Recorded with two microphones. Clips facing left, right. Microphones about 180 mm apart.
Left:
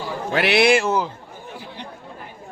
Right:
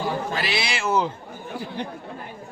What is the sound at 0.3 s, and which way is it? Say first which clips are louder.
Speech: left 11 dB; 65° left (ahead or behind).